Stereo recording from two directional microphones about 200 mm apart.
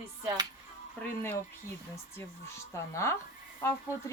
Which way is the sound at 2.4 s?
15° left (ahead or behind).